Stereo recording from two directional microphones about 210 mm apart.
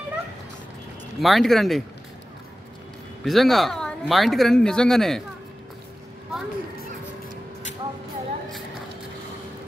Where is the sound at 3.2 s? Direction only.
Centre (ahead or behind).